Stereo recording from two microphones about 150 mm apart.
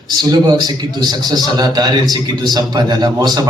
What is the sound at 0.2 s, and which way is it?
A man's voice, 25° right (ahead or behind).